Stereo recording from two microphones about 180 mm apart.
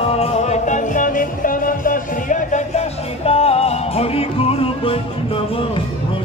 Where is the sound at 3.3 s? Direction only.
35° left (ahead or behind).